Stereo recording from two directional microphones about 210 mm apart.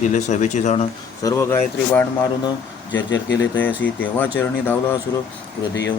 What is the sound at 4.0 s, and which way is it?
Speech, 10° left (ahead or behind).